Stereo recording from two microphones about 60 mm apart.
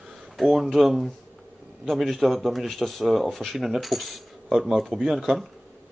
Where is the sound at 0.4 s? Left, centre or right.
Centre.